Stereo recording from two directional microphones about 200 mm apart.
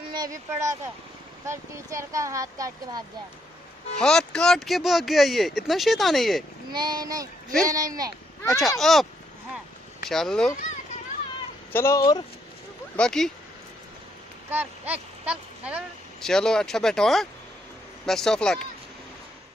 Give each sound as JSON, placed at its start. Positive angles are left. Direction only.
{"t": 0.1, "sound": "speech", "side_deg": -20}
{"t": 4.0, "sound": "speech", "side_deg": 5}
{"t": 6.7, "sound": "a child's voice", "side_deg": -20}
{"t": 8.5, "sound": "speech", "side_deg": 0}
{"t": 10.0, "sound": "speech", "side_deg": 0}
{"t": 11.7, "sound": "speech", "side_deg": 15}
{"t": 12.9, "sound": "speech", "side_deg": 5}
{"t": 14.5, "sound": "speech", "side_deg": -10}